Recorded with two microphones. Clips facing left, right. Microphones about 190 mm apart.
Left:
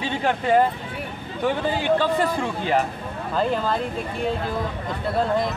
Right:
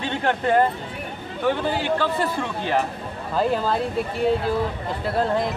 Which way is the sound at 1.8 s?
15° left (ahead or behind).